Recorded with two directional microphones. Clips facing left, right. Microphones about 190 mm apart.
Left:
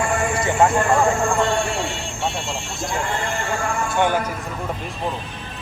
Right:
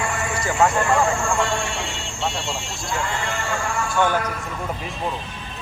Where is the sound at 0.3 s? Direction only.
25° left (ahead or behind).